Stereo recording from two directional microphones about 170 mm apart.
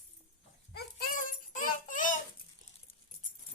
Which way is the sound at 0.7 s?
55° left (ahead or behind).